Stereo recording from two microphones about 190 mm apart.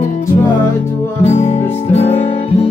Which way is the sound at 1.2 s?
35° left (ahead or behind).